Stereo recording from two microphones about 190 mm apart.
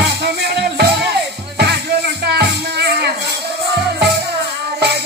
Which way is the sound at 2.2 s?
60° right (ahead or behind).